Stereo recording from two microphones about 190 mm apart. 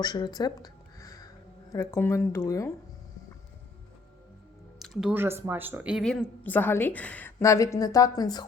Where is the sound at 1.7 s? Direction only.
15° left (ahead or behind).